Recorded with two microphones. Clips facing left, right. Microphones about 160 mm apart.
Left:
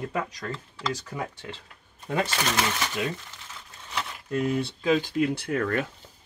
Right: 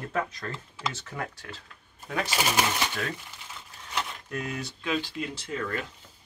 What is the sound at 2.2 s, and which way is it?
Speech, 10° right (ahead or behind).